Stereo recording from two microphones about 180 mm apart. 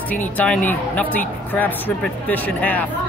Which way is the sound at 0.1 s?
10° left (ahead or behind).